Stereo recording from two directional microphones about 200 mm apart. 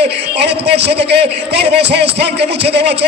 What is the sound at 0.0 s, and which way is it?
A man's voice, 55° right (ahead or behind).